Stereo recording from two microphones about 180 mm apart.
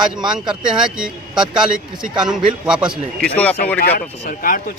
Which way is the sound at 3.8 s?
55° left (ahead or behind).